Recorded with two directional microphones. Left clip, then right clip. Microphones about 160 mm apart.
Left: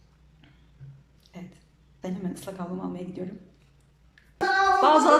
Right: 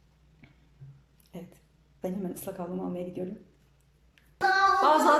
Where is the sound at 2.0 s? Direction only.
15° right (ahead or behind).